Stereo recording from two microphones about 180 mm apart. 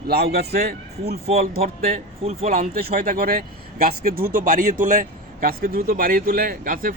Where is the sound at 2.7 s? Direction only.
55° right (ahead or behind).